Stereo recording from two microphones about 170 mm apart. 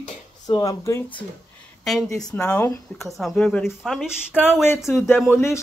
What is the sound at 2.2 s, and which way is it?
Speech, 5° left (ahead or behind).